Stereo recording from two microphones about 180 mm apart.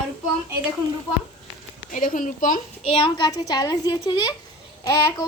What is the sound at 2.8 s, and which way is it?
A child's voice, 30° left (ahead or behind).